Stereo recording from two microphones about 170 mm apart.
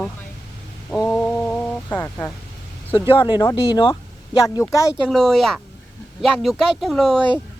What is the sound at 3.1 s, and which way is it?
Speech, 30° left (ahead or behind).